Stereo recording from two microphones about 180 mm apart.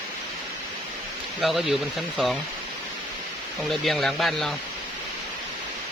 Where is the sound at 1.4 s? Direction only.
Centre (ahead or behind).